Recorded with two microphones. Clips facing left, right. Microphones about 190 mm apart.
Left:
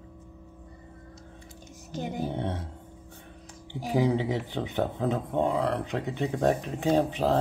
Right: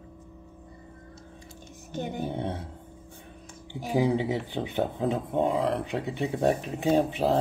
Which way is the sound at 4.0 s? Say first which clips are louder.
Right 1 dB; 10° right (ahead or behind).